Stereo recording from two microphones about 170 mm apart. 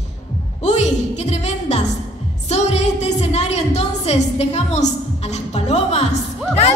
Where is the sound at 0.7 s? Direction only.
45° left (ahead or behind).